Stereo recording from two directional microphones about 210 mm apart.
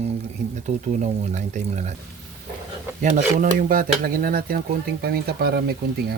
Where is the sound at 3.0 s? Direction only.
40° right (ahead or behind).